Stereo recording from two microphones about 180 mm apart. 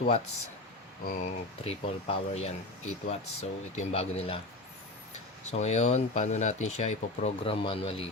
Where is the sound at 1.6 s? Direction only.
35° left (ahead or behind).